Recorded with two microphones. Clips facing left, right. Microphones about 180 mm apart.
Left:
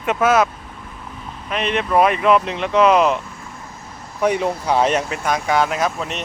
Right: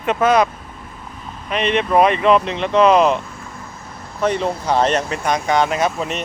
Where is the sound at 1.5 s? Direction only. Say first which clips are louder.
Right 3 dB; centre (ahead or behind).